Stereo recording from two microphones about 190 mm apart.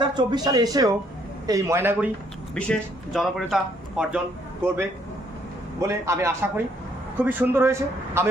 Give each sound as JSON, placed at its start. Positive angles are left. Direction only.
{"t": 0.0, "sound": "speech", "side_deg": -20}
{"t": 2.5, "sound": "a man's voice", "side_deg": 5}
{"t": 5.8, "sound": "speech", "side_deg": -15}